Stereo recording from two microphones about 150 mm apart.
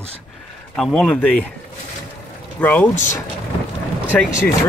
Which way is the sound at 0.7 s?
5° left (ahead or behind).